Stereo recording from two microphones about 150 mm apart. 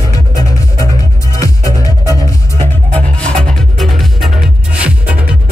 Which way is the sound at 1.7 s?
20° right (ahead or behind).